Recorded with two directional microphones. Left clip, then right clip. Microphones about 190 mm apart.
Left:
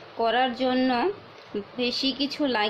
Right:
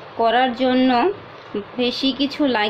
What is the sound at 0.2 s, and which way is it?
A woman's voice, centre (ahead or behind).